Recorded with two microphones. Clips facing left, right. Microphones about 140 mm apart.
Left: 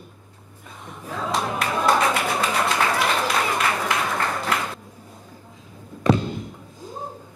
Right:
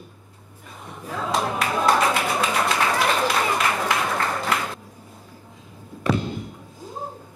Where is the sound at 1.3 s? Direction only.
Centre (ahead or behind).